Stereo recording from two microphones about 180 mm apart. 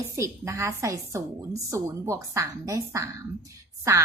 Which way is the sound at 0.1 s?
15° right (ahead or behind).